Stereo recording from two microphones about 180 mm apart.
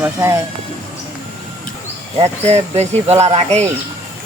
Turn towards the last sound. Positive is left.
turn(degrees=-40)  # may be behind; listen again after turning